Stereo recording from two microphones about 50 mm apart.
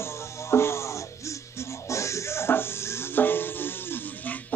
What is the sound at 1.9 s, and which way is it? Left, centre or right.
Music, left.